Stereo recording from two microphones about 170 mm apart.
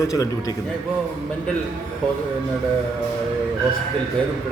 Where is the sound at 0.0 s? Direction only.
20° left (ahead or behind).